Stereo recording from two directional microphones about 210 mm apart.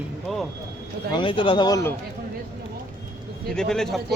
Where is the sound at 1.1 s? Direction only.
25° left (ahead or behind).